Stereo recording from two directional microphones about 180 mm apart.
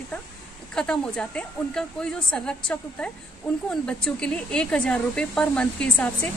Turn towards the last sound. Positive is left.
turn(degrees=5)  # may be behind; listen again after turning